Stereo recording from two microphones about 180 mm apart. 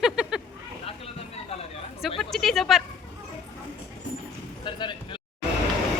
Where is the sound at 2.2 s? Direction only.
Centre (ahead or behind).